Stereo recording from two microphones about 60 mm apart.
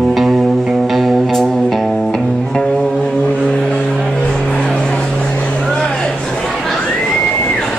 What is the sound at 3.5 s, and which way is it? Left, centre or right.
Vehicle, centre.